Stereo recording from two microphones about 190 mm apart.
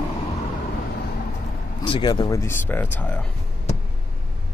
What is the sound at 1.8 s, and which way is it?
Speech, 25° left (ahead or behind).